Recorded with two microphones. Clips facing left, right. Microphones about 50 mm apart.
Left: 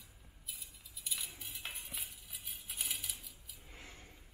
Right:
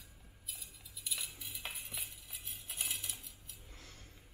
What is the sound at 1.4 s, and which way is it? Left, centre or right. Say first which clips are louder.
Cutlery: even; centre.